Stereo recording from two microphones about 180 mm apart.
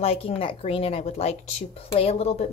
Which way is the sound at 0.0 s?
35° left (ahead or behind).